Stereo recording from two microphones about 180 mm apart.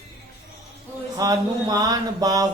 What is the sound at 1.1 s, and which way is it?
Speech, 20° right (ahead or behind).